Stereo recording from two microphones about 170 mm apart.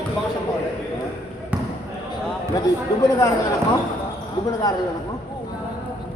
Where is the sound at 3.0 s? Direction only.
20° left (ahead or behind).